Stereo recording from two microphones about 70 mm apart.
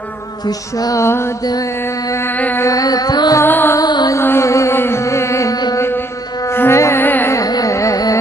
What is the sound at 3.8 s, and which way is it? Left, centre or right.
Music, left.